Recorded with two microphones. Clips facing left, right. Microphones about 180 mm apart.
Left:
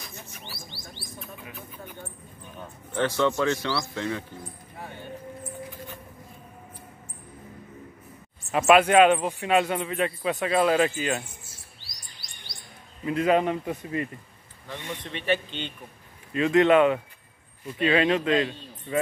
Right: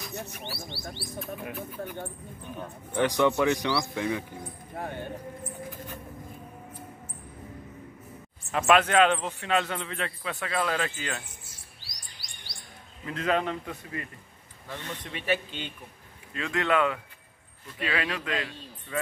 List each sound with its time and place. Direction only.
0.1 s bird: 65° right (ahead or behind)
2.9 s speech: 15° right (ahead or behind)
8.5 s a man's voice: 10° left (ahead or behind)
13.0 s a man's voice: 10° left (ahead or behind)
15.1 s speech: 5° right (ahead or behind)
16.3 s speech: 20° left (ahead or behind)